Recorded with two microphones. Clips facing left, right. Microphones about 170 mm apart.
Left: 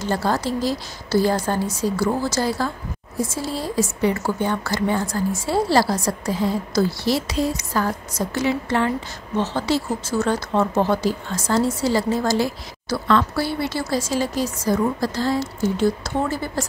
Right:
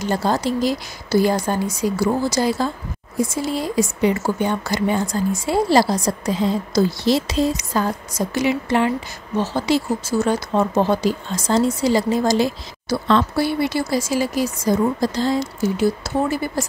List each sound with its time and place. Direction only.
0.0 s speech: 15° right (ahead or behind)